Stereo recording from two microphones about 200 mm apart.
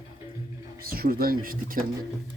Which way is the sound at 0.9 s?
45° right (ahead or behind).